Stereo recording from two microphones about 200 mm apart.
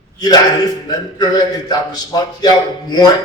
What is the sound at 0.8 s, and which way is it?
Speech, 20° left (ahead or behind).